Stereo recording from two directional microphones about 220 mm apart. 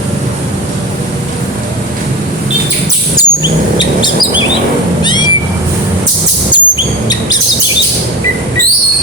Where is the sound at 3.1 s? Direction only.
20° left (ahead or behind).